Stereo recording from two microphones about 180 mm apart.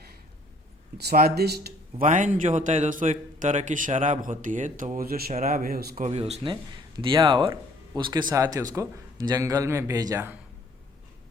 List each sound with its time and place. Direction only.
0.9 s speech: 60° right (ahead or behind)
2.0 s a man's voice: 45° right (ahead or behind)
6.1 s speech: 35° right (ahead or behind); by 10.3 s 15° right (ahead or behind)